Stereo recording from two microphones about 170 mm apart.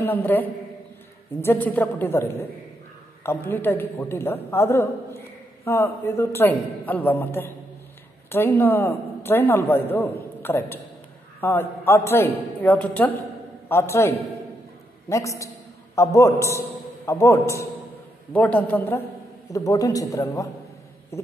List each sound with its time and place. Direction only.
0.0 s a man's voice: 10° left (ahead or behind)
3.3 s a man's voice: 10° left (ahead or behind)
21.1 s a sound: 15° left (ahead or behind)